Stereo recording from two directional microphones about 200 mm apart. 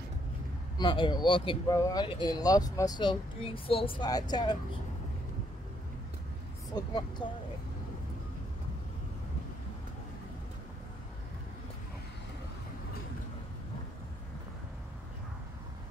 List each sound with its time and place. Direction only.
0.7 s speech: 25° left (ahead or behind)
6.7 s speech: 20° left (ahead or behind)